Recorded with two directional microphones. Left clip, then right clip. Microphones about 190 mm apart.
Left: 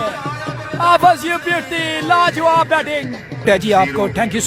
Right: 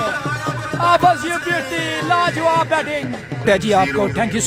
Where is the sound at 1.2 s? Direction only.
15° left (ahead or behind).